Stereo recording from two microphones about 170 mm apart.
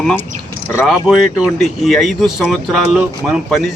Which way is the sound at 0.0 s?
5° left (ahead or behind).